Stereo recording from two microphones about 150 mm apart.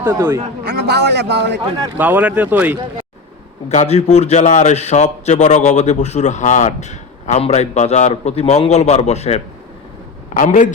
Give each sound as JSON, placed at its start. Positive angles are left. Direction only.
{"t": 0.0, "sound": "speech", "side_deg": -15}
{"t": 0.6, "sound": "a man's voice", "side_deg": -90}
{"t": 2.0, "sound": "speech", "side_deg": -10}
{"t": 3.7, "sound": "a man's voice", "side_deg": 45}
{"t": 10.3, "sound": "a man's voice", "side_deg": 60}